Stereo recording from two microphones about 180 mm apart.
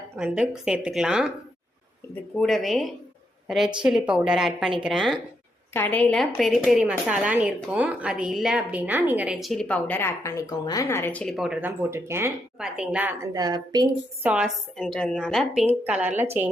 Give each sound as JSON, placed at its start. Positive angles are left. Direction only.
{"t": 0.2, "sound": "speech", "side_deg": -5}
{"t": 2.4, "sound": "a woman's voice", "side_deg": 0}
{"t": 13.3, "sound": "a woman's voice", "side_deg": -25}
{"t": 14.3, "sound": "a woman's voice", "side_deg": -5}